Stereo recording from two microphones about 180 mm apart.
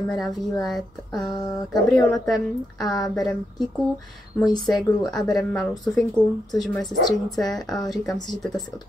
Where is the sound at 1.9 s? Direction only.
Centre (ahead or behind).